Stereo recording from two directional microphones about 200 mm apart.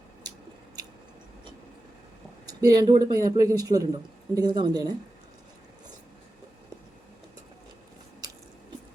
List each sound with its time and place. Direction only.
2.5 s speech: 20° right (ahead or behind)